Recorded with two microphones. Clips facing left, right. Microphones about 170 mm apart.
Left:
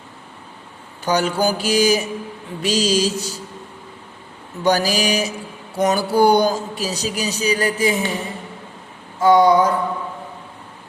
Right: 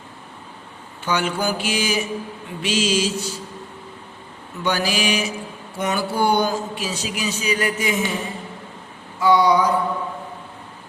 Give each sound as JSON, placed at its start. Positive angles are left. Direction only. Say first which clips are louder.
{"t": 1.0, "sound": "speech", "louder": "left 4 dB", "side_deg": 40}
{"t": 4.6, "sound": "speech", "louder": "left 4 dB", "side_deg": 40}
{"t": 9.2, "sound": "a sound", "louder": "left 3 dB", "side_deg": 50}